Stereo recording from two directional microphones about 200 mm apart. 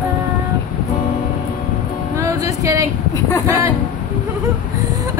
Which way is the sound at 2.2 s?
15° right (ahead or behind).